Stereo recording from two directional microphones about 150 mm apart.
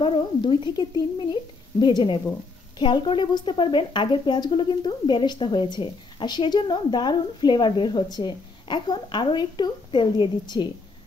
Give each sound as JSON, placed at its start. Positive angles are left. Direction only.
{"t": 0.0, "sound": "a woman's voice", "side_deg": 35}